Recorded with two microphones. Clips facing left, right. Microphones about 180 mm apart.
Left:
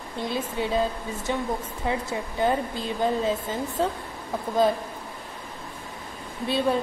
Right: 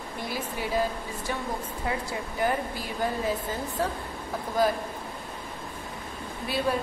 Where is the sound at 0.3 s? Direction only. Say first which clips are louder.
Left 4 dB; 25° left (ahead or behind).